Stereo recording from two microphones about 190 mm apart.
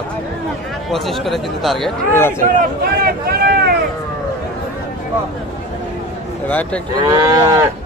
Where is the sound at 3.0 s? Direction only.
55° right (ahead or behind).